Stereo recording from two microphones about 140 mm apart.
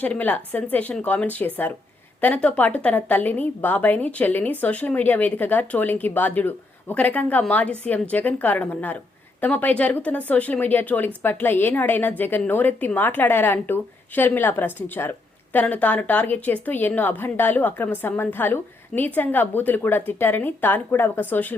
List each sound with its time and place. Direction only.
0.0 s a woman's voice: 10° left (ahead or behind)